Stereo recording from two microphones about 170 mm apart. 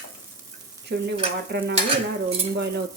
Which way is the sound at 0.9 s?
90° right.